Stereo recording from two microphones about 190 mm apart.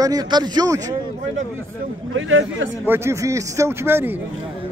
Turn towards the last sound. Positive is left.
turn(degrees=-10)  # may be behind; listen again after turning